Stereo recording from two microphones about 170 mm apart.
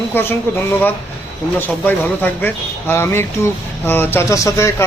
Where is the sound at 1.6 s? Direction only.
10° left (ahead or behind).